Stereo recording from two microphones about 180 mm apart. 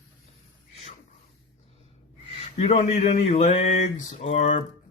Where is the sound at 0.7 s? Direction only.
35° left (ahead or behind).